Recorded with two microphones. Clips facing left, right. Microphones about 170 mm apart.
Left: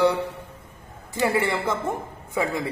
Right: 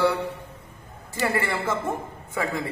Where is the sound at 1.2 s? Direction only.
15° left (ahead or behind).